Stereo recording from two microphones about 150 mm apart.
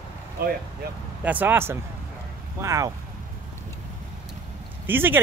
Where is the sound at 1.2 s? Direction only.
10° right (ahead or behind).